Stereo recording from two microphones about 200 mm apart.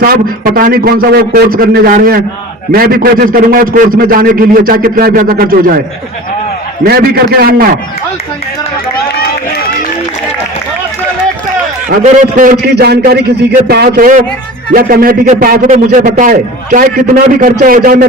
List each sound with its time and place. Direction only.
0.0 s a man's voice: 45° right (ahead or behind)
6.8 s a man's voice: 50° right (ahead or behind)
12.0 s a man's voice: 45° right (ahead or behind)